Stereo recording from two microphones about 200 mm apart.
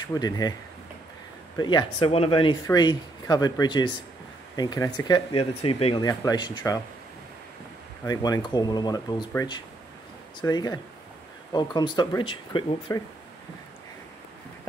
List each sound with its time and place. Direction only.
0.0 s speech: 20° left (ahead or behind)
1.6 s speech: 20° left (ahead or behind)
8.0 s speech: 20° left (ahead or behind)